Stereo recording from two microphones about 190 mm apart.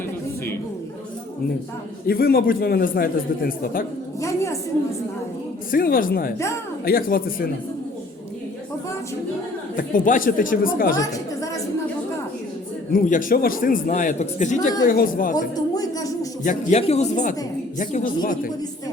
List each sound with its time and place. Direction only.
2.0 s a man's voice: 50° left (ahead or behind)
4.2 s a woman's voice: 15° left (ahead or behind)
5.7 s a man's voice: 50° left (ahead or behind)
9.7 s a man's voice: 45° left (ahead or behind)
10.9 s a sound: 15° left (ahead or behind)
12.9 s a man's voice: 45° left (ahead or behind)
15.5 s a sound: 20° left (ahead or behind)
16.4 s a man's voice: 45° left (ahead or behind)